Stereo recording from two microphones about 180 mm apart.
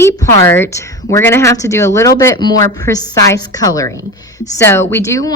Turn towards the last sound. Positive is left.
turn(degrees=15)  # may be behind; listen again after turning